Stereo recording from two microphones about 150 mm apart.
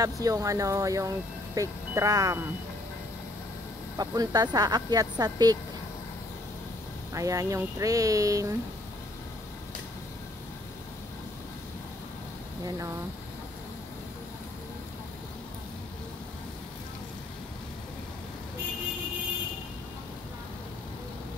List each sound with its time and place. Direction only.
0.0 s speech: 25° right (ahead or behind)
4.0 s speech: 25° right (ahead or behind)
7.2 s speech: 20° right (ahead or behind)
12.6 s speech: 20° right (ahead or behind)